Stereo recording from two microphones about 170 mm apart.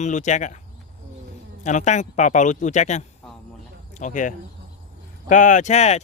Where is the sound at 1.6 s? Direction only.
45° left (ahead or behind).